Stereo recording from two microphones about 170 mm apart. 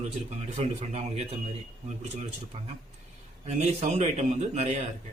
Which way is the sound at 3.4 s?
45° right (ahead or behind).